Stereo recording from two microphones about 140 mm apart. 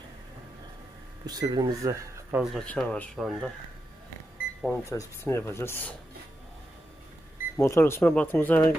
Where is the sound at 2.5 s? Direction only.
5° left (ahead or behind).